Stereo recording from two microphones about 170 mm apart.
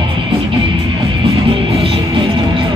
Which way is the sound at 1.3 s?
35° right (ahead or behind).